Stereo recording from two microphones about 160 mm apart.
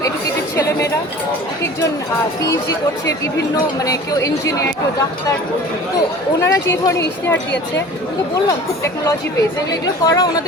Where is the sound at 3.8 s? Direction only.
20° left (ahead or behind).